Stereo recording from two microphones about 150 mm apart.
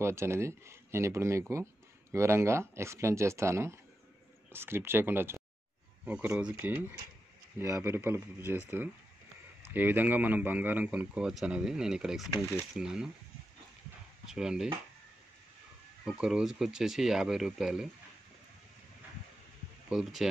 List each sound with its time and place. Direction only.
0.0 s speech: 20° right (ahead or behind)
14.2 s speech: 5° right (ahead or behind)
16.1 s speech: 5° right (ahead or behind)
19.9 s speech: centre (ahead or behind)